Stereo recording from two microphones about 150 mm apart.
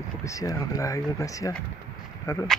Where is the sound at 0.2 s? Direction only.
20° left (ahead or behind).